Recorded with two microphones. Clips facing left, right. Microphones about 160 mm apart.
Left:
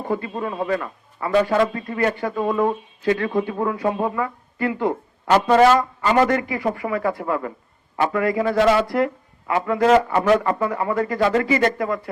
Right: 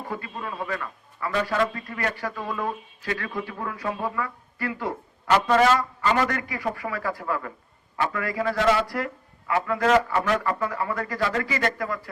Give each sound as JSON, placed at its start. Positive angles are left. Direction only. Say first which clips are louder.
{"t": 0.0, "sound": "a man's voice", "louder": "left 8 dB", "side_deg": 25}